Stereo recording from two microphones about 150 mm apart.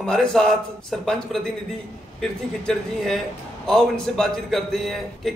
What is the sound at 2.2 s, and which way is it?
A man's voice, 5° left (ahead or behind).